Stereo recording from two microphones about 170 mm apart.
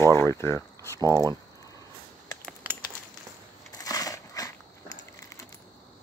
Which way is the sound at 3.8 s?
20° left (ahead or behind).